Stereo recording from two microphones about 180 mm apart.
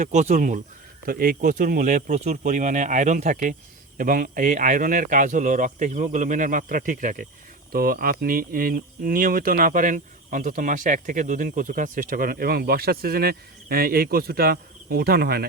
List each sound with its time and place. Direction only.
0.0 s speech: 40° right (ahead or behind); by 15.4 s 60° right (ahead or behind)